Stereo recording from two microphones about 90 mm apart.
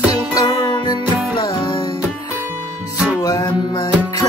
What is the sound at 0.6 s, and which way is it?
Music, 60° left (ahead or behind).